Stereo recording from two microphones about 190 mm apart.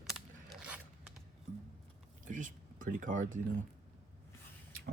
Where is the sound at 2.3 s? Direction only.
45° right (ahead or behind).